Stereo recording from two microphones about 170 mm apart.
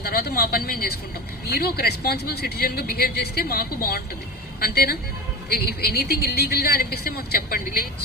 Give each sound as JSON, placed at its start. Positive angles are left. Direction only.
{"t": 0.0, "sound": "a woman's voice", "side_deg": 65}